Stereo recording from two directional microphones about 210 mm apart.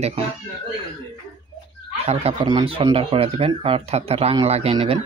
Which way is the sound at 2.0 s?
30° right (ahead or behind).